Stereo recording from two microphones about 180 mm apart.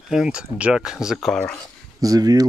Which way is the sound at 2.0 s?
20° right (ahead or behind).